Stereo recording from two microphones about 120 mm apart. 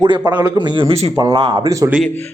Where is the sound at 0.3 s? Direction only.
35° right (ahead or behind).